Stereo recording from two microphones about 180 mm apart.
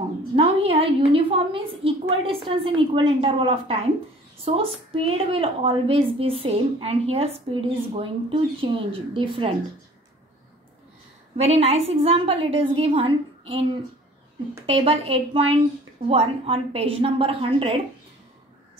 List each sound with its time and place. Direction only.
0.4 s a woman's voice: 35° right (ahead or behind)
11.3 s a woman's voice: 35° right (ahead or behind)
14.7 s a woman's voice: 30° right (ahead or behind)